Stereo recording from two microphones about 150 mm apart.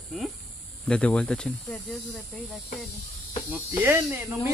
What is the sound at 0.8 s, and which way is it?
Speech, 5° left (ahead or behind).